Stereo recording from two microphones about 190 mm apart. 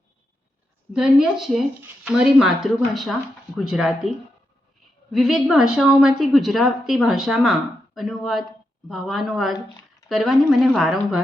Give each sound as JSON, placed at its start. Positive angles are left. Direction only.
{"t": 0.9, "sound": "a woman's voice", "side_deg": -5}
{"t": 5.1, "sound": "a woman's voice", "side_deg": -5}